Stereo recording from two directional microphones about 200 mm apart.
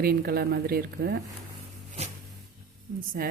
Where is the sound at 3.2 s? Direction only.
45° right (ahead or behind).